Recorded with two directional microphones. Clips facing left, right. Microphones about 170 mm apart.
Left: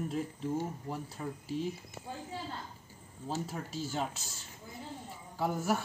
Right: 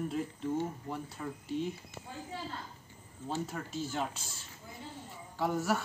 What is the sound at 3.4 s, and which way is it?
Speech, 5° left (ahead or behind).